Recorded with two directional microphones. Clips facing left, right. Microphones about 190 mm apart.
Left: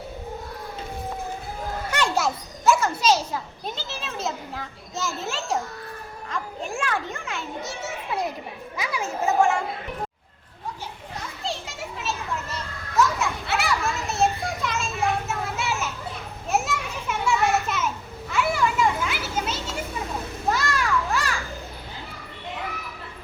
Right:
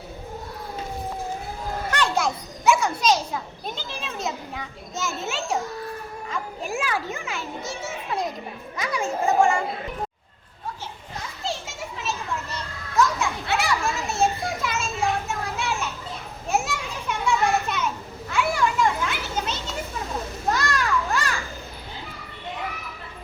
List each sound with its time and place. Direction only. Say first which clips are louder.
1.9 s a child's voice: even; 10° left (ahead or behind)
11.4 s children playing: right 1 dB; centre (ahead or behind)